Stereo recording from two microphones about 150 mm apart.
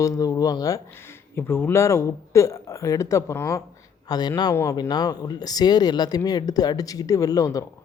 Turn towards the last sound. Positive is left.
turn(degrees=25)  # may be behind; listen again after turning